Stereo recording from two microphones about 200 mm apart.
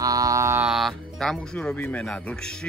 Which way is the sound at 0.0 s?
15° right (ahead or behind).